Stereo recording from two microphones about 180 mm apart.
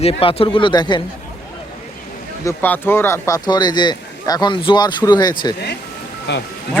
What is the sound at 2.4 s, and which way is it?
Speech, 10° left (ahead or behind).